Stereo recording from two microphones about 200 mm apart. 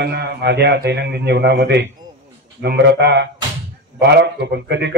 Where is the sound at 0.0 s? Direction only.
55° right (ahead or behind).